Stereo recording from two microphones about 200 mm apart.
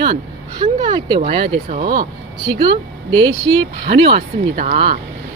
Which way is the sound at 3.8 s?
55° right (ahead or behind).